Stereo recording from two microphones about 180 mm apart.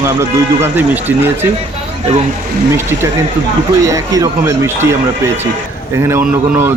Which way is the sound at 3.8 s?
15° right (ahead or behind).